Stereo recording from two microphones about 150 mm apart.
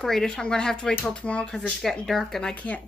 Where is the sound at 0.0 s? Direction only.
5° left (ahead or behind).